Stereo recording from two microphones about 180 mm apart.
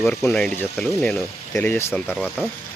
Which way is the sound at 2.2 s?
Centre (ahead or behind).